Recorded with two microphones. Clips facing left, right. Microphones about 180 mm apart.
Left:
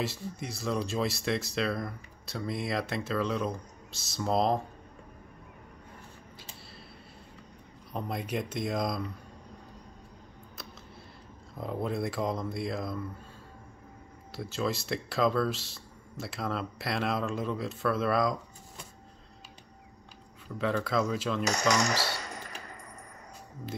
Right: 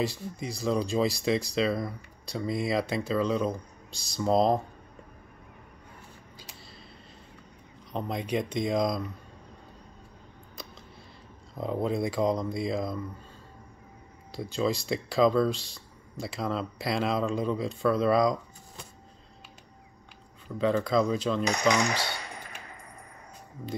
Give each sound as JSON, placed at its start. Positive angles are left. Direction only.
{"t": 0.0, "sound": "speech", "side_deg": 0}
{"t": 8.1, "sound": "speech", "side_deg": 5}
{"t": 11.6, "sound": "speech", "side_deg": 0}
{"t": 14.3, "sound": "speech", "side_deg": 5}
{"t": 21.1, "sound": "speech", "side_deg": 5}
{"t": 21.6, "sound": "a sound", "side_deg": 40}